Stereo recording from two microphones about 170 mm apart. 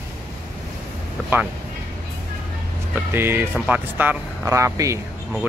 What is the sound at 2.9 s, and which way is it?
Speech, 15° right (ahead or behind).